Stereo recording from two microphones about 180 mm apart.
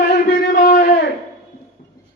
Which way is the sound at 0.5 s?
50° left (ahead or behind).